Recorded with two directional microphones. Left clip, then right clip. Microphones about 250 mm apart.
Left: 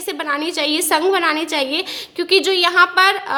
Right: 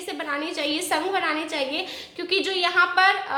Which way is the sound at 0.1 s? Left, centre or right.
Left.